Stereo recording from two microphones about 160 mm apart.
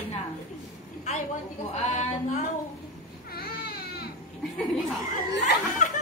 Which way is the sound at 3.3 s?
75° left (ahead or behind).